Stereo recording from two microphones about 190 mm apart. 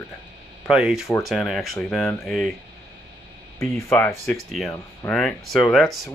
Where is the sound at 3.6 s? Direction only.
10° left (ahead or behind).